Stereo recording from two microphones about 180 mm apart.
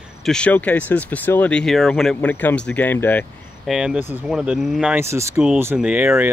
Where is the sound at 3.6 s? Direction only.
5° right (ahead or behind).